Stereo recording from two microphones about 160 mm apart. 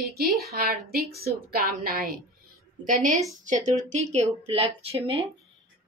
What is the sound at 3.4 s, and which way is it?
A woman's voice, 50° right (ahead or behind).